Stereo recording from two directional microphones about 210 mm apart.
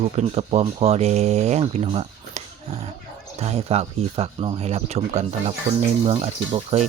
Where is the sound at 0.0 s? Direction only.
30° right (ahead or behind).